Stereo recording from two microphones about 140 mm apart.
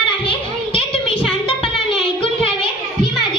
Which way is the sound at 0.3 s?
40° left (ahead or behind).